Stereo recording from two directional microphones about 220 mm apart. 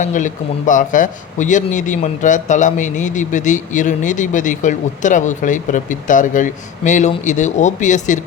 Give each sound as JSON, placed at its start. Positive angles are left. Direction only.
{"t": 0.0, "sound": "a man's voice", "side_deg": 35}